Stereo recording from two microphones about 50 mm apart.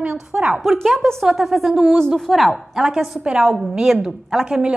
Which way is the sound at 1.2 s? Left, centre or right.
Centre.